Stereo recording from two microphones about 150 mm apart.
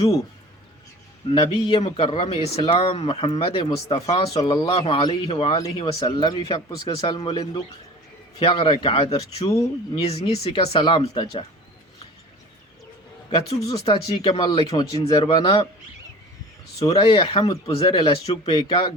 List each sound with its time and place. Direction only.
1.3 s speech: 35° left (ahead or behind)
4.4 s speech: 25° left (ahead or behind)
5.3 s speech: 40° left (ahead or behind)
6.2 s speech: 25° left (ahead or behind); by 9.5 s 40° left (ahead or behind)
9.5 s speech: 20° left (ahead or behind)
10.0 s speech: 45° left (ahead or behind)
13.8 s speech: 35° left (ahead or behind)
17.0 s speech: 35° left (ahead or behind)